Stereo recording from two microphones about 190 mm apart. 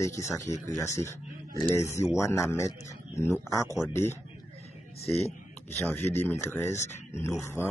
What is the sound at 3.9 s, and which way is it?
Speech, 15° left (ahead or behind).